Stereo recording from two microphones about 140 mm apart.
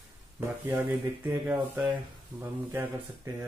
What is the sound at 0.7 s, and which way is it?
Speech, 15° right (ahead or behind).